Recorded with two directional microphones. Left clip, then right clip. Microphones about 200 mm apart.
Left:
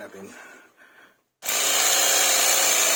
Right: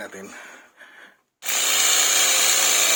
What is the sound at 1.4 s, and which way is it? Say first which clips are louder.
Tools: right 2 dB; 45° left (ahead or behind).